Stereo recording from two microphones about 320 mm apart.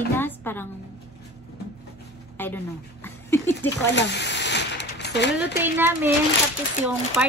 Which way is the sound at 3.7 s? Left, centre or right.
Left.